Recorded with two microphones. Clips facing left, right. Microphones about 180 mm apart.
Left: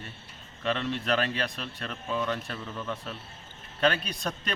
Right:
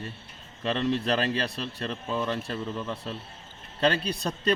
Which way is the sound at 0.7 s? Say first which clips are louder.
Right 3 dB; 35° right (ahead or behind).